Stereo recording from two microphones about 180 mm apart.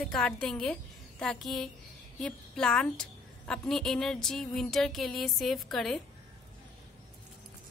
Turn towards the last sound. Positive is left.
turn(degrees=0)  # may be behind; listen again after turning